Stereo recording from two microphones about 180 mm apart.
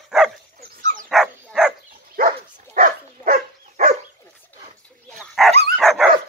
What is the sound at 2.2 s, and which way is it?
Dog, 50° right (ahead or behind).